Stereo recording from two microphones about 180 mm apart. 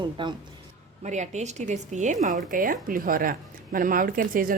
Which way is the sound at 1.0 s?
40° right (ahead or behind).